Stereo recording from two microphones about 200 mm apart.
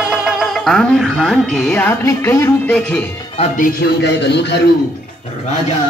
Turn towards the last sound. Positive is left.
turn(degrees=60)  # may be behind; listen again after turning